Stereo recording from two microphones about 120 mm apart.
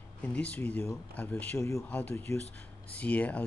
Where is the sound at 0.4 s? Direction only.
10° left (ahead or behind).